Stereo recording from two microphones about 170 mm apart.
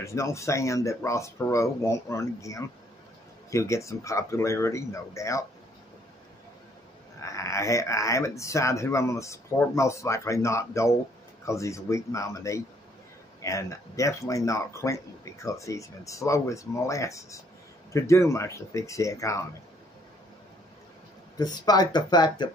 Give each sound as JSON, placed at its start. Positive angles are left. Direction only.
{"t": 0.0, "sound": "speech", "side_deg": 15}
{"t": 7.2, "sound": "speech", "side_deg": 20}
{"t": 21.4, "sound": "speech", "side_deg": 25}